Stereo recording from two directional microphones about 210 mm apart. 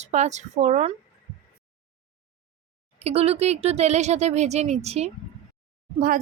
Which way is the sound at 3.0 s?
30° right (ahead or behind).